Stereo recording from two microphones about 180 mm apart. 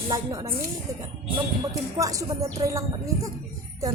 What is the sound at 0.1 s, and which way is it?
Speech, 20° right (ahead or behind).